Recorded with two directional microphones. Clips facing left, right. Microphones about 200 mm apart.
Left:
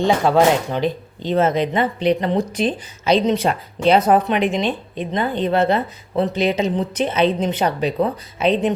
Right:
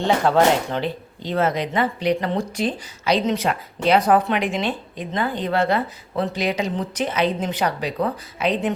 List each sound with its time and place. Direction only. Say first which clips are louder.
0.0 s speech: left 2 dB; 15° left (ahead or behind)